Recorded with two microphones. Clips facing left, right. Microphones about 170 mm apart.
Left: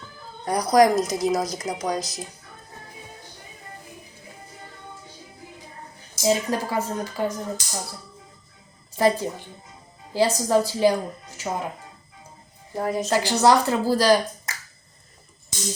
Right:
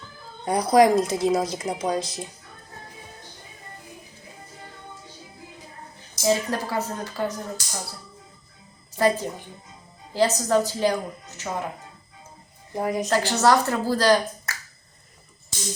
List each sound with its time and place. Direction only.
0.4 s speech: 25° right (ahead or behind)
6.2 s speech: 15° left (ahead or behind)
9.0 s speech: 15° left (ahead or behind)
12.7 s a woman's voice: 15° right (ahead or behind)
13.1 s speech: 15° left (ahead or behind)